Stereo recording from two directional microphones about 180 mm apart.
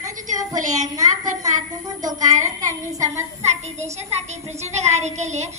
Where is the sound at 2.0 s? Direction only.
20° right (ahead or behind).